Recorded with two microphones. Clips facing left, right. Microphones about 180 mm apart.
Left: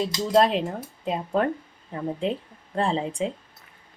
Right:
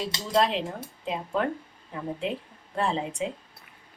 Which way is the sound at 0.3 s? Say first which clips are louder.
Left 4 dB; 45° left (ahead or behind).